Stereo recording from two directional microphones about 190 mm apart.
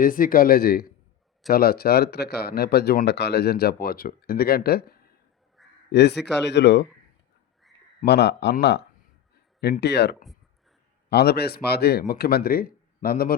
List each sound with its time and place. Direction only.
0.0 s speech: 45° left (ahead or behind)
5.6 s crow: centre (ahead or behind)
5.9 s speech: 60° left (ahead or behind)
8.0 s speech: 60° left (ahead or behind)